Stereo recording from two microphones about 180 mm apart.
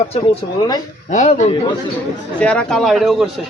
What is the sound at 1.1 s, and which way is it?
Speech, 45° left (ahead or behind).